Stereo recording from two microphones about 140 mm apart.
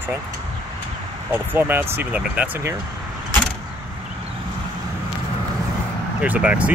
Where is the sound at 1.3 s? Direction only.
15° right (ahead or behind).